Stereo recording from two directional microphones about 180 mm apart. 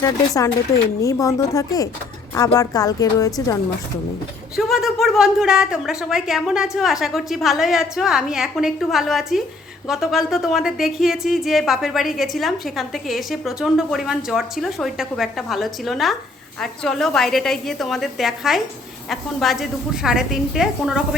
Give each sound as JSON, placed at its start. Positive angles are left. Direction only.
{"t": 0.0, "sound": "a woman's voice", "side_deg": 15}
{"t": 4.5, "sound": "speech", "side_deg": 0}